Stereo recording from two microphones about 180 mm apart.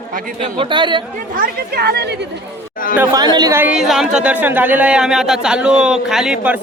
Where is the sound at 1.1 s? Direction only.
50° right (ahead or behind).